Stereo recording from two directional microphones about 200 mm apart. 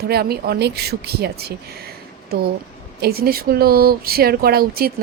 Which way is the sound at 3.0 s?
50° right (ahead or behind).